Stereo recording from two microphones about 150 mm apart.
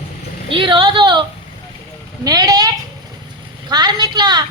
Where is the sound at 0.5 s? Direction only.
35° right (ahead or behind).